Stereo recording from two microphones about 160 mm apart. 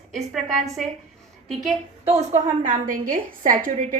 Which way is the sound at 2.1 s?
45° right (ahead or behind).